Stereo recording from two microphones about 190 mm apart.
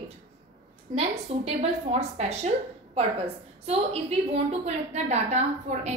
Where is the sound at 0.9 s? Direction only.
35° right (ahead or behind).